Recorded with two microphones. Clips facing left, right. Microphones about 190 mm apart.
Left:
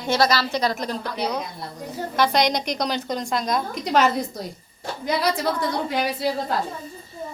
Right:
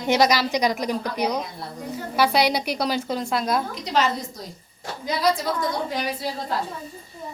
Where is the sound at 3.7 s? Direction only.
55° left (ahead or behind).